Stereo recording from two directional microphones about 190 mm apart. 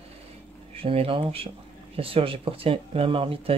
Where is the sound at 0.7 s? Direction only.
30° right (ahead or behind).